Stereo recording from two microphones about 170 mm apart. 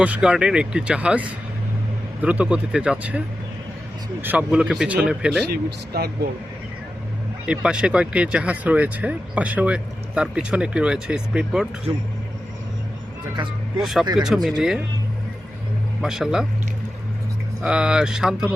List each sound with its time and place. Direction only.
0.0 s speech: 5° right (ahead or behind)
2.2 s speech: 10° right (ahead or behind)
5.5 s speech: 65° right (ahead or behind)
7.4 s speech: 5° right (ahead or behind)
13.3 s speech: 25° right (ahead or behind)
13.8 s speech: centre (ahead or behind)
16.0 s speech: centre (ahead or behind)
17.6 s speech: 5° right (ahead or behind)